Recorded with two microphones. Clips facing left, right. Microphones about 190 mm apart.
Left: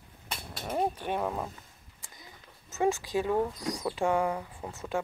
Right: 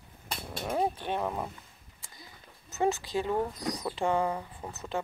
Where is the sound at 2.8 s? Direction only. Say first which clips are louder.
Left 1 dB; 15° left (ahead or behind).